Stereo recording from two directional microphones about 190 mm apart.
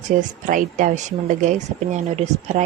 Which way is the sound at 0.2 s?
45° right (ahead or behind).